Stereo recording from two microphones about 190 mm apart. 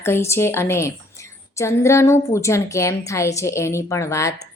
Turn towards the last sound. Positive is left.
turn(degrees=15)  # may be behind; listen again after turning